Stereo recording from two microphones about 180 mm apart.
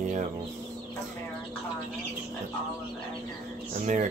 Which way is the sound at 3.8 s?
45° right (ahead or behind).